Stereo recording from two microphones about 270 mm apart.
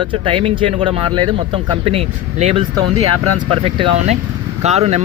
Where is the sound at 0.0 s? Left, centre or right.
Centre.